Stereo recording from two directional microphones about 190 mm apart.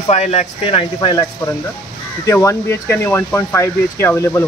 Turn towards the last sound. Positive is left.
turn(degrees=15)  # may be behind; listen again after turning